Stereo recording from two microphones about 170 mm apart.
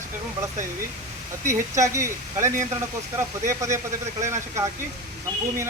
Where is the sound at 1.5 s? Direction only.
15° right (ahead or behind).